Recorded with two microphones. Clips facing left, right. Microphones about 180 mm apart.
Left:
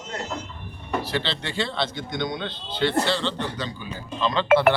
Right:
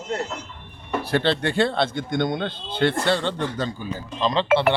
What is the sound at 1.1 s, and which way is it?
Speech, 55° right (ahead or behind).